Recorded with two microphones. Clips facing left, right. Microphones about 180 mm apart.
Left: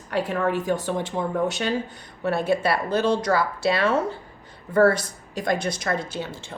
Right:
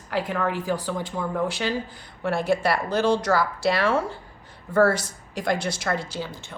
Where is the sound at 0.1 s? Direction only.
30° left (ahead or behind).